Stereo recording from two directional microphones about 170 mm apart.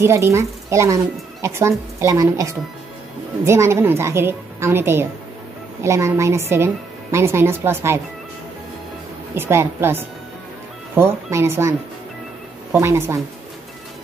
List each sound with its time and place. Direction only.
0.0 s a child's voice: 15° right (ahead or behind)
9.3 s a child's voice: 15° right (ahead or behind)
12.8 s a child's voice: 15° right (ahead or behind)